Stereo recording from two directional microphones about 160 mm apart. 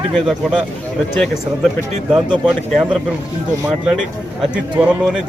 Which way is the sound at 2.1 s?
5° right (ahead or behind).